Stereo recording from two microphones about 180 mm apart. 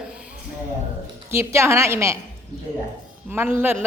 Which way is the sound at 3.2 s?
10° right (ahead or behind).